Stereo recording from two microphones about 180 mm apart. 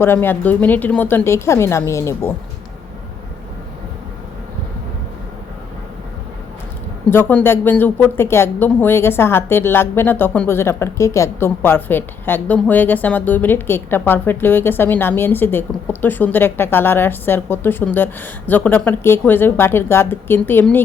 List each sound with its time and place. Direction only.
0.0 s speech: 10° left (ahead or behind)
7.1 s speech: 10° left (ahead or behind)